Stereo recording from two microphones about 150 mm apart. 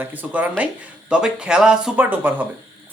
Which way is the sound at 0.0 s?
10° right (ahead or behind).